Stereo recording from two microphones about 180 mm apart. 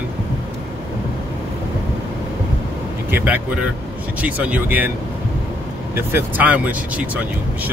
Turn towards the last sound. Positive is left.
turn(degrees=-10)  # may be behind; listen again after turning